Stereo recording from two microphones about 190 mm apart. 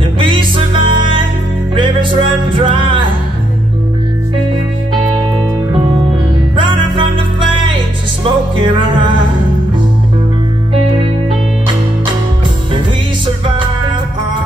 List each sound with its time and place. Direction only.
0.2 s music: 25° right (ahead or behind)
6.5 s music: 25° right (ahead or behind)